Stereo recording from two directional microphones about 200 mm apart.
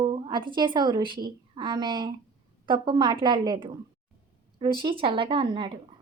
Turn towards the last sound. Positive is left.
turn(degrees=-25)  # may be behind; listen again after turning